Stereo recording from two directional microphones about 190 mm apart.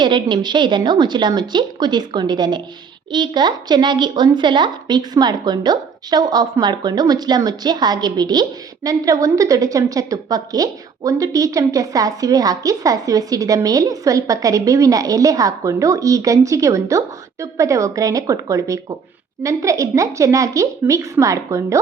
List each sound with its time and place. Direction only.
0.0 s a woman's voice: 25° right (ahead or behind)